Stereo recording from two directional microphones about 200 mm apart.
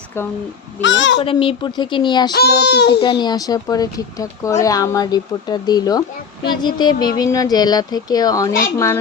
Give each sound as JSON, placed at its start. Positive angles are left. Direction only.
{"t": 0.1, "sound": "a child's voice", "side_deg": 10}
{"t": 0.8, "sound": "a child's voice", "side_deg": 65}
{"t": 1.2, "sound": "speech", "side_deg": 25}
{"t": 2.3, "sound": "a child's voice", "side_deg": 55}
{"t": 3.0, "sound": "speech", "side_deg": 20}